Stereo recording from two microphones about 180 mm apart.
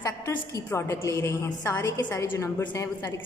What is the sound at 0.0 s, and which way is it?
A woman's voice, 20° left (ahead or behind).